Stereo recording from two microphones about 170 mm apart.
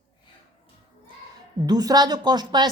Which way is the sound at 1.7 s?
25° right (ahead or behind).